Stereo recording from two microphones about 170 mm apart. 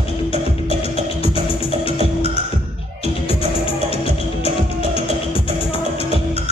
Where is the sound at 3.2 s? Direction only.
35° left (ahead or behind).